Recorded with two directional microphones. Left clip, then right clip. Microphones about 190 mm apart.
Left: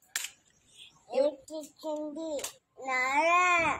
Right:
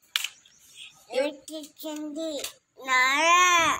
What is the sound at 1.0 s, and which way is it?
A child's voice, centre (ahead or behind).